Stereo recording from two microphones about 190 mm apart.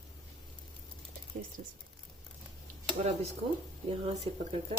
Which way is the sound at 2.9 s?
35° right (ahead or behind).